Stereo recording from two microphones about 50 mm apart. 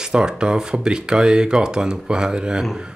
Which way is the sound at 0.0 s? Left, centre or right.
Centre.